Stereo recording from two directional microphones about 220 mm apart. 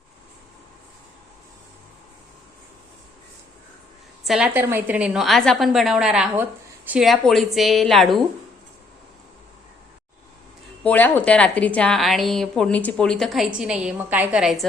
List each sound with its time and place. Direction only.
4.2 s a woman's voice: centre (ahead or behind)
10.8 s a woman's voice: 10° left (ahead or behind)